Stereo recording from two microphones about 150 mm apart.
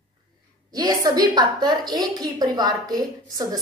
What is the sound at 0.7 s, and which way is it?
A woman's voice, 25° right (ahead or behind).